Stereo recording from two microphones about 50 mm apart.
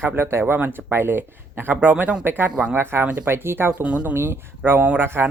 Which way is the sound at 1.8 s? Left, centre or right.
Right.